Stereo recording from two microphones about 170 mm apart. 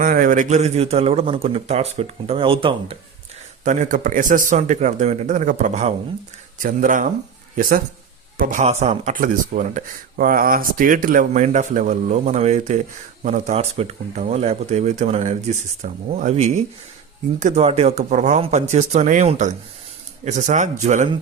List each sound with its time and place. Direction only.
0.0 s speech: 55° right (ahead or behind); by 3.0 s 30° right (ahead or behind)
3.6 s speech: 45° right (ahead or behind)
8.6 s speech: 40° right (ahead or behind)
9.1 s speech: 55° right (ahead or behind)